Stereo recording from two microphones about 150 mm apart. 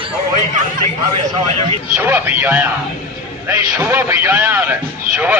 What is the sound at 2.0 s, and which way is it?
Speech, 15° right (ahead or behind).